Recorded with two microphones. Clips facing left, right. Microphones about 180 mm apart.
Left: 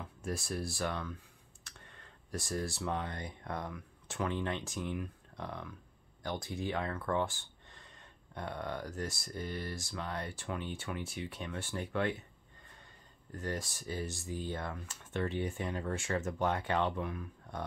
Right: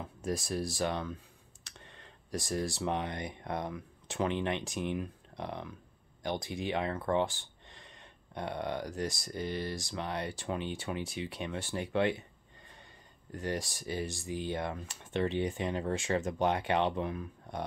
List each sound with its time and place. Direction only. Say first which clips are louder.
0.2 s speech: right 4 dB; 15° right (ahead or behind)
9.4 s speech: right 4 dB; 85° right
9.8 s speech: right 3 dB; 15° right (ahead or behind)
13.3 s speech: right 3 dB; 15° right (ahead or behind)